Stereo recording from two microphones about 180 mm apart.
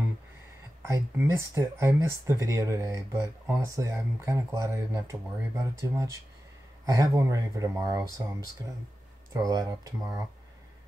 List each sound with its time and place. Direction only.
0.8 s speech: 15° right (ahead or behind)
9.3 s speech: 20° right (ahead or behind)